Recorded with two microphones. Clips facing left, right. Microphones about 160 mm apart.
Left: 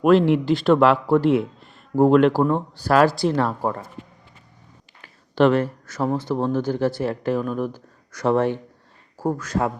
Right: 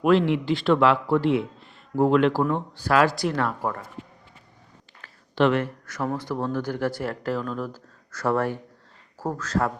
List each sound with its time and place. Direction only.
0.0 s speech: 45° left (ahead or behind); by 3.8 s 25° left (ahead or behind)
5.3 s a man's voice: 40° left (ahead or behind); by 9.7 s 15° left (ahead or behind)